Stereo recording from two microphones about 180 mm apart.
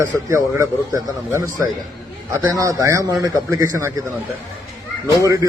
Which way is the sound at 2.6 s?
20° right (ahead or behind).